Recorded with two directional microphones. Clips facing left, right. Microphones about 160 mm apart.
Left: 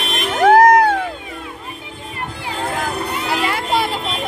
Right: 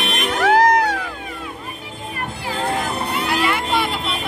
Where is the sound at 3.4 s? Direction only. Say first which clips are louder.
Left 1 dB; 35° left (ahead or behind).